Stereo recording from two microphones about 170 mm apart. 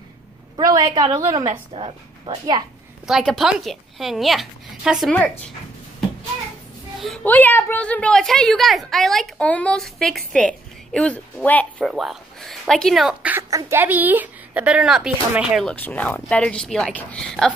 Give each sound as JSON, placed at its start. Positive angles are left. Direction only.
{"t": 0.6, "sound": "a woman's voice", "side_deg": -25}
{"t": 1.7, "sound": "a woman's voice", "side_deg": -30}
{"t": 3.1, "sound": "a woman's voice", "side_deg": 0}
{"t": 5.1, "sound": "speech", "side_deg": 10}
{"t": 7.0, "sound": "a woman's voice", "side_deg": 5}
{"t": 15.7, "sound": "speech", "side_deg": 10}